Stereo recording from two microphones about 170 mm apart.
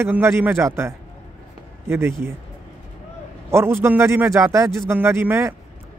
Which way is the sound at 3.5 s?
15° right (ahead or behind).